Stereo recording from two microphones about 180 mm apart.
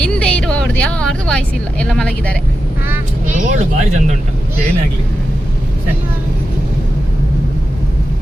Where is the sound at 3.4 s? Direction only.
45° right (ahead or behind).